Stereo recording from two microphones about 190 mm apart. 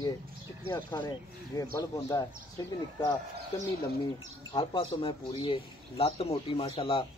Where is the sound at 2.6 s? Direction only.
20° left (ahead or behind).